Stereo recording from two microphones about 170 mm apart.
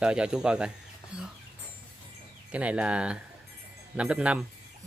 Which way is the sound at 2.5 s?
10° right (ahead or behind).